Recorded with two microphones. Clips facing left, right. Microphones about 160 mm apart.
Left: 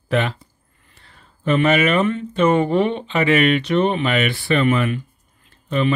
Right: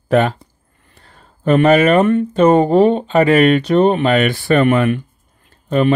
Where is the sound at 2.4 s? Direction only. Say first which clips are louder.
Right 6 dB; 40° right (ahead or behind); by 5.0 s 55° right (ahead or behind).